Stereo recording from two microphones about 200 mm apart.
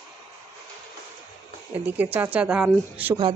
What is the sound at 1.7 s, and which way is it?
Speech, 10° right (ahead or behind).